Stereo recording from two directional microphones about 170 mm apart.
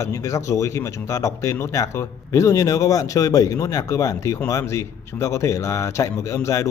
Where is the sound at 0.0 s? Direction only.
20° left (ahead or behind).